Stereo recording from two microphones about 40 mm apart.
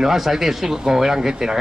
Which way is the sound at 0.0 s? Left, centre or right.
Centre.